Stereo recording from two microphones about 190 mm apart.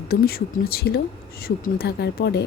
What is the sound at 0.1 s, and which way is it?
Speech, 55° left (ahead or behind).